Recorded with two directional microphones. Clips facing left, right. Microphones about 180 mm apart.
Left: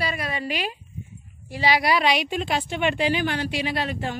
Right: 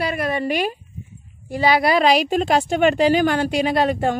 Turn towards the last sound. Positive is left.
turn(degrees=-50)  # may be behind; listen again after turning